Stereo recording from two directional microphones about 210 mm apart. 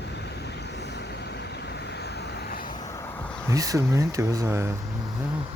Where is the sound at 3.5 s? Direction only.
15° right (ahead or behind).